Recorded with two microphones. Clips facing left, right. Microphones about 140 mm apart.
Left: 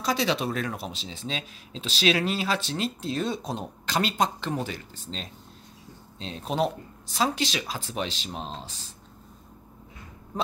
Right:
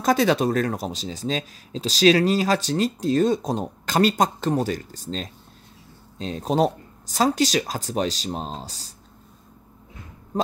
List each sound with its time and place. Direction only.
0.0 s speech: 50° right (ahead or behind)